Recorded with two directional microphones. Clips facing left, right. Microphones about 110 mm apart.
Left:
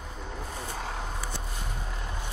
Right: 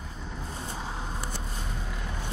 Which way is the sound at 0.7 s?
65° left (ahead or behind).